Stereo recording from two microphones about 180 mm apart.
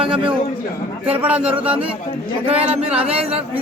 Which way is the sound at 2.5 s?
35° right (ahead or behind).